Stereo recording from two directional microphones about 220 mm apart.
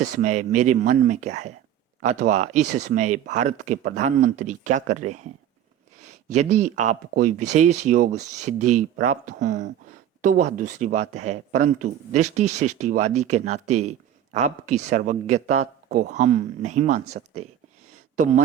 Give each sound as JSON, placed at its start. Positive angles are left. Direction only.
{"t": 0.0, "sound": "speech", "side_deg": -35}
{"t": 6.7, "sound": "speech", "side_deg": -35}